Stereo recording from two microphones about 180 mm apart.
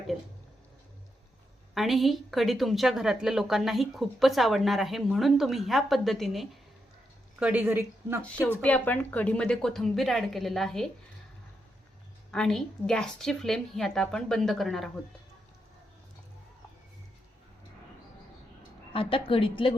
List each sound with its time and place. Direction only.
1.7 s a woman's voice: centre (ahead or behind)
8.6 s a woman's voice: 10° left (ahead or behind)
12.3 s a woman's voice: centre (ahead or behind)
18.9 s a woman's voice: 30° left (ahead or behind)